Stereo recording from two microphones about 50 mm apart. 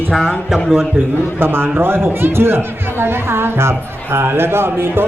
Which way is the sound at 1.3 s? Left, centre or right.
Right.